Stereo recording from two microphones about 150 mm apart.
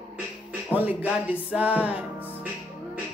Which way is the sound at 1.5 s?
10° right (ahead or behind).